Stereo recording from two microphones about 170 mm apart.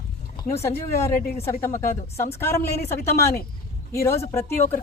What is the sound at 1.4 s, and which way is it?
A woman's voice, 15° left (ahead or behind).